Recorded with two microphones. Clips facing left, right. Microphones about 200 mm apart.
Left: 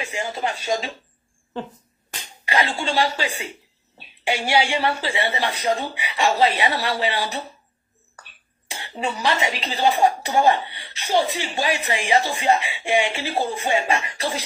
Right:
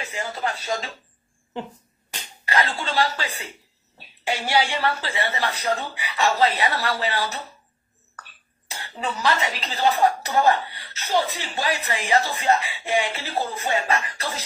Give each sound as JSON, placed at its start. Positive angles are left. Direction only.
{"t": 0.0, "sound": "speech", "side_deg": 15}
{"t": 2.4, "sound": "speech", "side_deg": 15}
{"t": 4.5, "sound": "speech", "side_deg": 10}
{"t": 8.2, "sound": "cough", "side_deg": 15}
{"t": 9.0, "sound": "speech", "side_deg": 15}